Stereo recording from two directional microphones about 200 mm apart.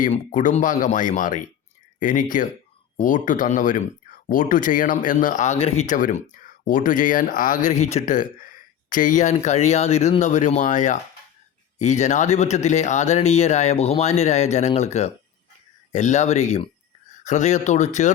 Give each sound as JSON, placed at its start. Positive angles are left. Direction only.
{"t": 0.0, "sound": "speech", "side_deg": 40}